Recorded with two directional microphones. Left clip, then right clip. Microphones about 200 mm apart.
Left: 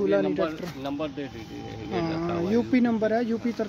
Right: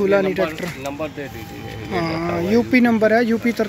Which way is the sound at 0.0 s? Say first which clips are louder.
Right 7 dB; 5° left (ahead or behind).